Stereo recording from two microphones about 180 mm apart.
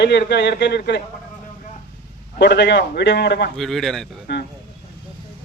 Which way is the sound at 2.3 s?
70° left (ahead or behind).